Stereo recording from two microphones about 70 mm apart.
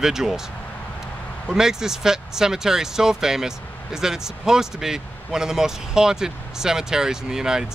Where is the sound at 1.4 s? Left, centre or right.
Centre.